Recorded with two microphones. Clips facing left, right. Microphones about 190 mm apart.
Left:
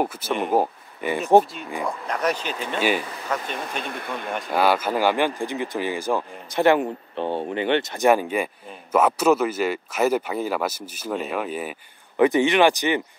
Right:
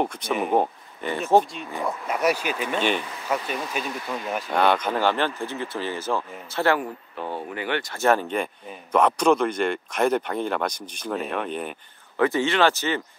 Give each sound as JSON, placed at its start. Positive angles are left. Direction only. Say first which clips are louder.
{"t": 0.0, "sound": "speech", "louder": "left 1 dB", "side_deg": 5}
{"t": 3.8, "sound": "speech", "louder": "even", "side_deg": 60}
{"t": 4.3, "sound": "speech", "louder": "left 1 dB", "side_deg": 0}
{"t": 12.2, "sound": "speech", "louder": "left 4 dB", "side_deg": 15}